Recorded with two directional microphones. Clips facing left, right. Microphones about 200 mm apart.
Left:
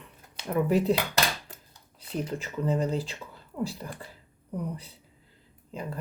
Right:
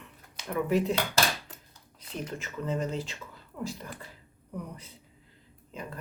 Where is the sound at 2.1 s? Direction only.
35° left (ahead or behind).